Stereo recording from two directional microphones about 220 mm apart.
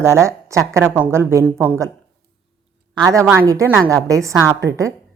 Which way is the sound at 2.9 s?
15° right (ahead or behind).